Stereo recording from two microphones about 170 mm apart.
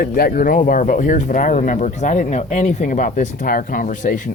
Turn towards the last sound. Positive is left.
turn(degrees=55)  # may be behind; listen again after turning